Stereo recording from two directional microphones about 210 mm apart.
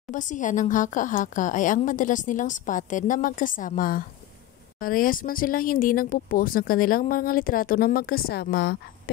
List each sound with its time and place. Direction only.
0.1 s speech: 35° left (ahead or behind)